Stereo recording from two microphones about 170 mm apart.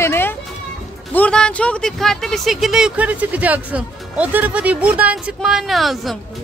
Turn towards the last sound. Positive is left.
turn(degrees=0)  # may be behind; listen again after turning